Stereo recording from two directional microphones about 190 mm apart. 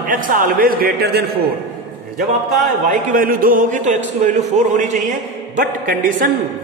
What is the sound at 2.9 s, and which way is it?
A man's voice, 45° right (ahead or behind).